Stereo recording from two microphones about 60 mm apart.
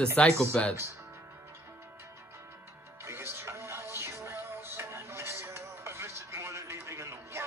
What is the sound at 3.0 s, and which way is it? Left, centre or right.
Music, right.